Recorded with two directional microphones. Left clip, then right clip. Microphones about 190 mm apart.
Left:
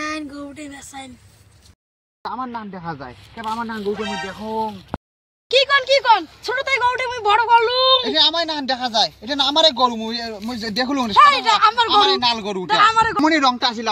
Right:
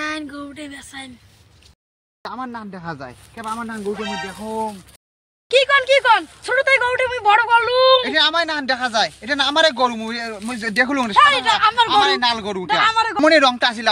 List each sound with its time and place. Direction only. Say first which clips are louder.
0.0 s a sound: right 1 dB; 25° right (ahead or behind)
2.2 s speech: left 2 dB; 20° right (ahead or behind)
3.9 s speech: left 1 dB; centre (ahead or behind)
5.5 s a sound: right 1 dB; 40° right (ahead or behind)
6.4 s speech: right 3 dB; 35° right (ahead or behind)
8.0 s speech: even; 15° right (ahead or behind)
11.1 s speech: left 1 dB; 60° right (ahead or behind)
11.9 s speech: even; 10° right (ahead or behind)
12.6 s speech: left 2 dB; 50° right (ahead or behind)
13.2 s a man's voice: right 3 dB; 35° right (ahead or behind)